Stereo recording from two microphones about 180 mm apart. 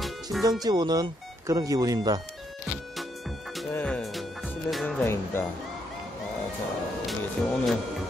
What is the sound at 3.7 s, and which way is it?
Music, 10° left (ahead or behind).